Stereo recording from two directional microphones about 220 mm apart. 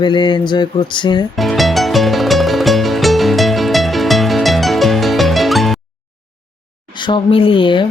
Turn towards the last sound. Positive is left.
turn(degrees=20)  # may be behind; listen again after turning